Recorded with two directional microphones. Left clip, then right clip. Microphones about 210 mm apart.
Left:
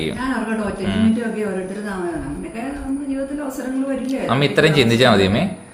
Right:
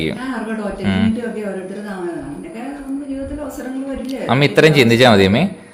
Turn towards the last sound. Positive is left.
turn(degrees=-15)  # may be behind; listen again after turning